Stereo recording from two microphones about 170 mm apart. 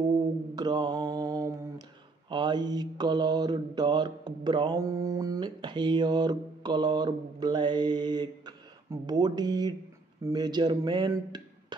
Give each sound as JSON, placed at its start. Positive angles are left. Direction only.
{"t": 0.6, "sound": "mantra", "side_deg": -25}